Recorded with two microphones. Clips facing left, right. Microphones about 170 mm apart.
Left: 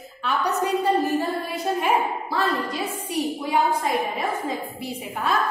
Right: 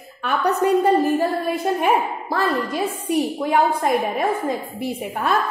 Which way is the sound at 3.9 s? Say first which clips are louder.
Right 5 dB; 55° right (ahead or behind).